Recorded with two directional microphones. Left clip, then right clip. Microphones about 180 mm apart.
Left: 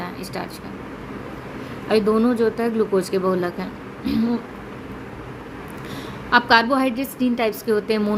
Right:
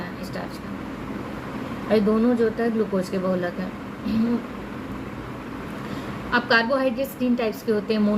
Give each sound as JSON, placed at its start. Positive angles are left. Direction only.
{"t": 1.9, "sound": "a woman's voice", "side_deg": 55}
{"t": 6.3, "sound": "a woman's voice", "side_deg": 50}